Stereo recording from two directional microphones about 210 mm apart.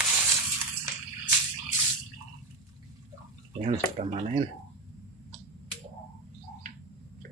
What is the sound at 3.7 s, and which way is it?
Speech, 30° right (ahead or behind).